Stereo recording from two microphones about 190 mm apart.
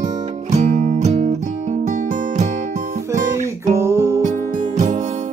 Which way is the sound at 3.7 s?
15° right (ahead or behind).